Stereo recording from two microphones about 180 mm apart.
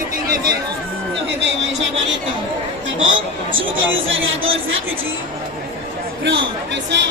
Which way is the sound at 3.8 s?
90° right.